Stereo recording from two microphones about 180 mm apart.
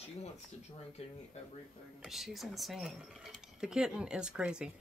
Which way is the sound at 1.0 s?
35° left (ahead or behind).